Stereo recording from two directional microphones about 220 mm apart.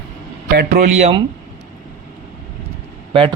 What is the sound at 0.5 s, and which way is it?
Speech, 45° right (ahead or behind).